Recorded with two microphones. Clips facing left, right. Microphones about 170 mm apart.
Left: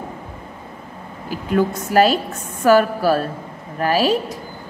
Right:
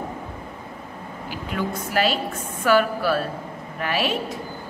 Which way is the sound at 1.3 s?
45° left (ahead or behind).